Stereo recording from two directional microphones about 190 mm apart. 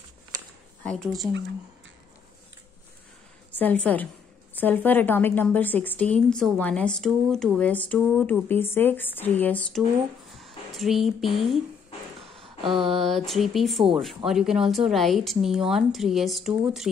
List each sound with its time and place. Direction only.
0.8 s speech: 5° left (ahead or behind)
3.5 s a woman's voice: 5° left (ahead or behind)
10.3 s music: centre (ahead or behind)
12.4 s a sound: 25° right (ahead or behind)
12.9 s speech: centre (ahead or behind)